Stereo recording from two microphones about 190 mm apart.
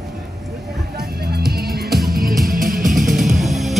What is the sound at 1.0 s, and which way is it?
Music, 55° right (ahead or behind).